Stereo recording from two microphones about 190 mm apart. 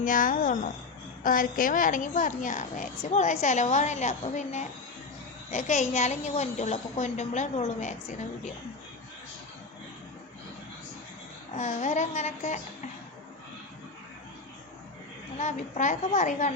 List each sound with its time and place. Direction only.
0.0 s a woman's voice: 45° left (ahead or behind)
11.5 s a woman's voice: 40° left (ahead or behind)
15.4 s a woman's voice: 40° left (ahead or behind)